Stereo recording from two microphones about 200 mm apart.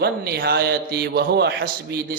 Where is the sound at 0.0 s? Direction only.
50° right (ahead or behind).